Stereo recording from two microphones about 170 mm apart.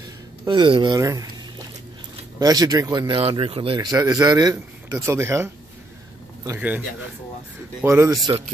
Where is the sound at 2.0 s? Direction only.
20° right (ahead or behind).